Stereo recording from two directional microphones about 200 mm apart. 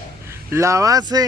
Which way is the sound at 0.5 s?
15° right (ahead or behind).